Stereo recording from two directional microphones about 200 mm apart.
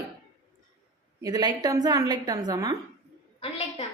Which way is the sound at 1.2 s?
20° right (ahead or behind).